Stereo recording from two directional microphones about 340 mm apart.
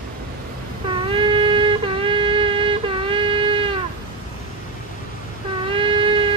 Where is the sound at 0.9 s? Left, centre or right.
Centre.